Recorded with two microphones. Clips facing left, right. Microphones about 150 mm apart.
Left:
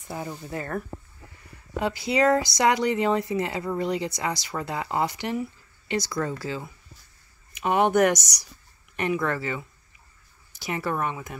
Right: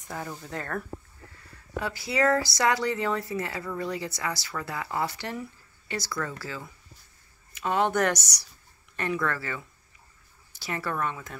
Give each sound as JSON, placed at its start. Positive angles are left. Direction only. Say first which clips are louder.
{"t": 0.1, "sound": "speech", "louder": "left 3 dB", "side_deg": 10}
{"t": 1.8, "sound": "speech", "louder": "left 4 dB", "side_deg": 20}